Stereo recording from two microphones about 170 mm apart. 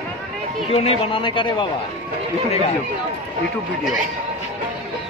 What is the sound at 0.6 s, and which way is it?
Speech, 35° left (ahead or behind).